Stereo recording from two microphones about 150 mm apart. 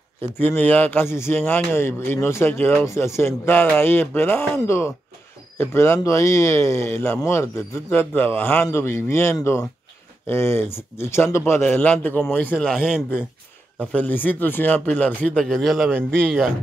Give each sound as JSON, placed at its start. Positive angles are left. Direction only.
{"t": 0.4, "sound": "a man's voice", "side_deg": 15}
{"t": 12.7, "sound": "a man's voice", "side_deg": -5}
{"t": 13.7, "sound": "a man's voice", "side_deg": 10}